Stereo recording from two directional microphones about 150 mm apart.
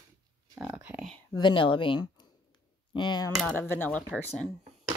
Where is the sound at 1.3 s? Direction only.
35° left (ahead or behind).